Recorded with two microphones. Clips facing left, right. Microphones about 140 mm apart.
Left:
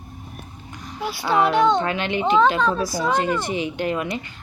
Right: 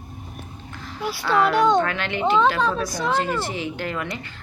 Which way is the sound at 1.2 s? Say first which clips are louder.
Left 1 dB; 20° left (ahead or behind).